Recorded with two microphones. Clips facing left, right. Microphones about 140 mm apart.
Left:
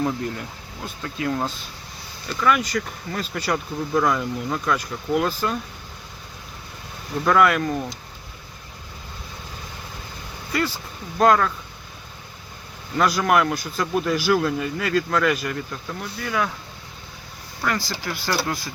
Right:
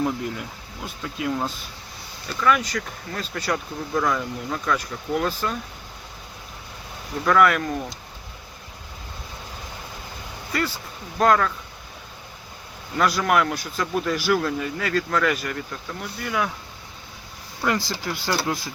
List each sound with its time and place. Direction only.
0.0 s speech: 5° right (ahead or behind)
7.3 s speech: 5° left (ahead or behind)
11.2 s speech: 5° left (ahead or behind)
13.0 s speech: centre (ahead or behind)
17.6 s speech: 20° right (ahead or behind)